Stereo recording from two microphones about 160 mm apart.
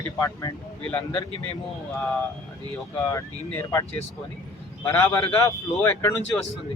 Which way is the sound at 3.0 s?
20° left (ahead or behind).